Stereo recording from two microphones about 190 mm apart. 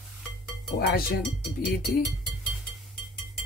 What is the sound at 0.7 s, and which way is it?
Speech, 55° left (ahead or behind).